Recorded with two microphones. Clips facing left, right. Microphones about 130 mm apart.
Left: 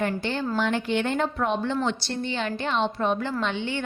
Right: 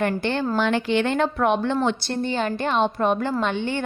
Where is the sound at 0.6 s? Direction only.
85° right.